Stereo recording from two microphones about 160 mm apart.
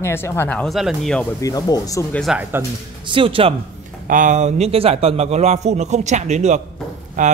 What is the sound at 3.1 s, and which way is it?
Speech, 35° right (ahead or behind).